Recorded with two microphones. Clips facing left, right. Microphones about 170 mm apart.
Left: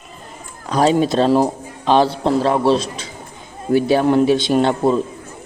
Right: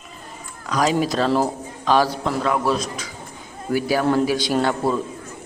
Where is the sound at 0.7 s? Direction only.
30° left (ahead or behind).